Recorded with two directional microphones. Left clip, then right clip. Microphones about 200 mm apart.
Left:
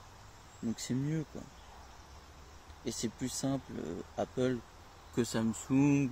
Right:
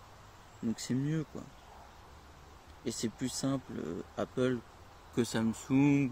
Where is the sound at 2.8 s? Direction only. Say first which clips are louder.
Right 1 dB; 25° right (ahead or behind).